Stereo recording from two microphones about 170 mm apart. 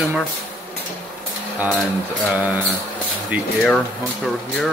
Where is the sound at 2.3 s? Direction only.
5° right (ahead or behind).